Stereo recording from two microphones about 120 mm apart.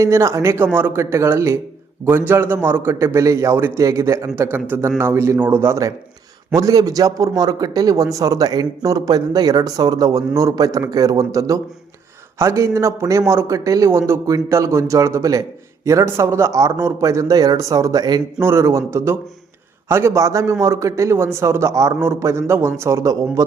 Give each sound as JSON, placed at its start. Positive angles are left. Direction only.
{"t": 0.0, "sound": "a man's voice", "side_deg": -25}